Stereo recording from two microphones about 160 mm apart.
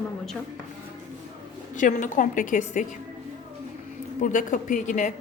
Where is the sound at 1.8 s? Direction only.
55° left (ahead or behind).